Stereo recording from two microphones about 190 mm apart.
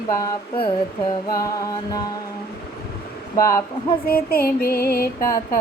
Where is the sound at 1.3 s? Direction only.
15° left (ahead or behind).